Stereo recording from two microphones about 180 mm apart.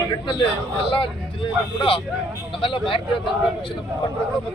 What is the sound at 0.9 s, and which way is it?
Speech, 30° left (ahead or behind).